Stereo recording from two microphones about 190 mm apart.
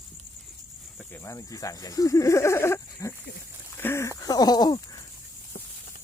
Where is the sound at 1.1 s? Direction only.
15° left (ahead or behind).